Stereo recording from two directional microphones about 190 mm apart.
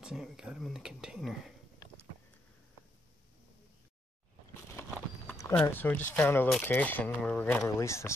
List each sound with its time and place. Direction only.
0.0 s speech: 5° right (ahead or behind)
1.8 s a sound: 20° left (ahead or behind)
4.9 s clip-clop: centre (ahead or behind)
5.4 s speech: 10° left (ahead or behind)